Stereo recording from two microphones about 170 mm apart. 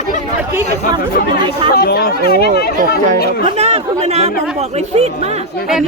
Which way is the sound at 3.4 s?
40° right (ahead or behind).